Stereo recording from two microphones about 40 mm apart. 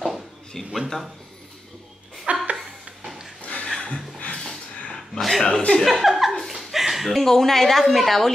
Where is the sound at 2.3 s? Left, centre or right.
Right.